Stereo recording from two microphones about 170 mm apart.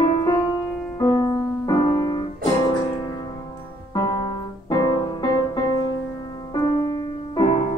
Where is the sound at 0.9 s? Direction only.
20° left (ahead or behind).